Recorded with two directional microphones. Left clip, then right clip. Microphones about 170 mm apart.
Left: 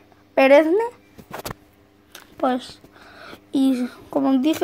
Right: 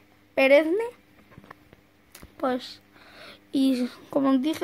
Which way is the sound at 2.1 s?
5° right (ahead or behind).